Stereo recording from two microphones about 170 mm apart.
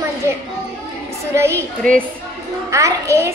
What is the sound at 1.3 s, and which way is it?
Speech, 15° right (ahead or behind).